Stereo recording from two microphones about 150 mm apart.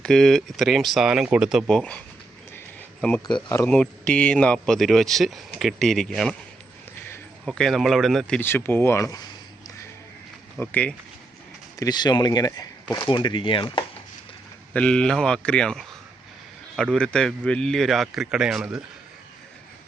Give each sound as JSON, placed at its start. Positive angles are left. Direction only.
{"t": 0.0, "sound": "speech", "side_deg": 5}
{"t": 3.7, "sound": "speech", "side_deg": 5}
{"t": 7.4, "sound": "speech", "side_deg": 5}
{"t": 8.4, "sound": "speech", "side_deg": 15}
{"t": 10.6, "sound": "speech", "side_deg": 10}
{"t": 11.8, "sound": "speech", "side_deg": 30}
{"t": 14.7, "sound": "speech", "side_deg": 5}